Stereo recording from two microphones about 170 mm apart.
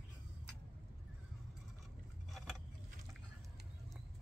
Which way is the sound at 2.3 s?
Centre (ahead or behind).